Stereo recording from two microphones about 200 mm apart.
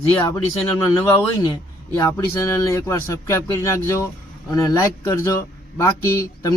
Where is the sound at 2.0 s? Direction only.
15° left (ahead or behind).